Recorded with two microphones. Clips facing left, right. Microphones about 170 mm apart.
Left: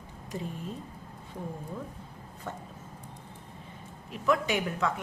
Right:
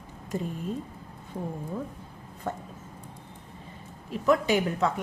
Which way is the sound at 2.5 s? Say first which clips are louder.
Right 6 dB; 45° right (ahead or behind).